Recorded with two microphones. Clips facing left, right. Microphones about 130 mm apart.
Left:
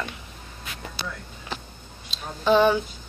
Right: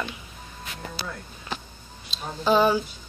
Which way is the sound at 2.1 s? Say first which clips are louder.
Left 1 dB; 5° right (ahead or behind).